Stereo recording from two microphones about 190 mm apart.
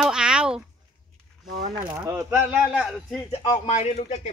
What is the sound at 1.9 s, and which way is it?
Speech, 15° right (ahead or behind).